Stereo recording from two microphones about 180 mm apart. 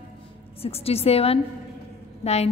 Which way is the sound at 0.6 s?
35° left (ahead or behind).